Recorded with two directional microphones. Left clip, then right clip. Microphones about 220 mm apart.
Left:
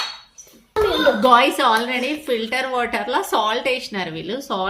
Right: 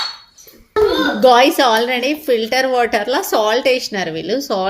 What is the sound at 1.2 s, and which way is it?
A woman's voice, 10° right (ahead or behind).